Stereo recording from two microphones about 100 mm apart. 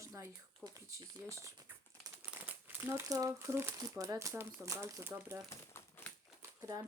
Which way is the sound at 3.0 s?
35° right (ahead or behind).